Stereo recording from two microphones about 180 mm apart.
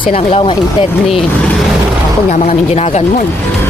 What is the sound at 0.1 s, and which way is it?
Speech, 30° left (ahead or behind).